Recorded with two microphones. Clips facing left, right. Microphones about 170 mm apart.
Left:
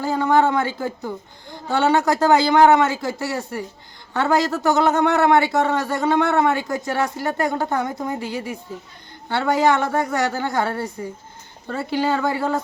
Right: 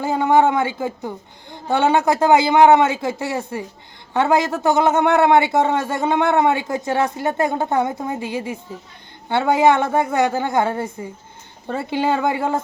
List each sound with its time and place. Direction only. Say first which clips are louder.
0.0 s a man's voice: right 2 dB; 20° right (ahead or behind)